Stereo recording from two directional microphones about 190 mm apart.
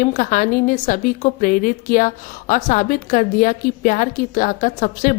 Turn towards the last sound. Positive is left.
turn(degrees=45)  # may be behind; listen again after turning